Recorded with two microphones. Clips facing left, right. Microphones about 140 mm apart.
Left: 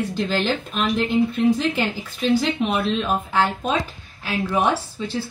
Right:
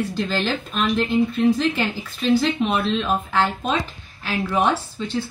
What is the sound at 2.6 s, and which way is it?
A woman's voice, 10° left (ahead or behind).